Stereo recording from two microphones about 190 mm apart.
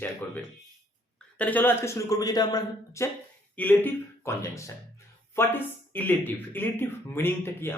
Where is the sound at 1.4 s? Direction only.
10° left (ahead or behind).